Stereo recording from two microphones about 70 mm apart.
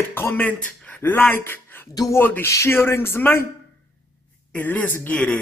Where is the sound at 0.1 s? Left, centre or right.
Left.